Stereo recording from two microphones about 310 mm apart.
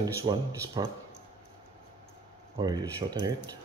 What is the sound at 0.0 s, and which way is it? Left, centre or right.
Speech, centre.